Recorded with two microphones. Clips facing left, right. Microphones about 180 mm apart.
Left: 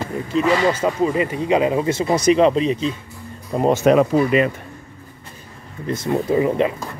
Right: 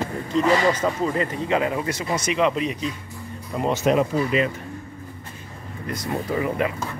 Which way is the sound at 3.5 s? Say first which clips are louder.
Left 6 dB; 40° left (ahead or behind).